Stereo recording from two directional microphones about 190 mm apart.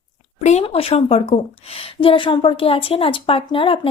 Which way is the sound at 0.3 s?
35° left (ahead or behind).